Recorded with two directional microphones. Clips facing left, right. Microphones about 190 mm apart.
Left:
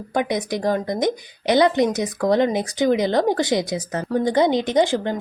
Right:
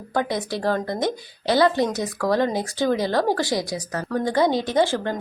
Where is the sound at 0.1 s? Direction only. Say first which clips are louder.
Left 2 dB; 15° left (ahead or behind).